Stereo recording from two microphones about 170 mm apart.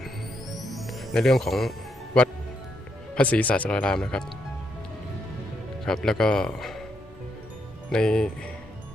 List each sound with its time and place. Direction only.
0.5 s music: centre (ahead or behind)
3.2 s speech: 10° left (ahead or behind)
5.8 s speech: centre (ahead or behind)
7.9 s speech: 5° left (ahead or behind)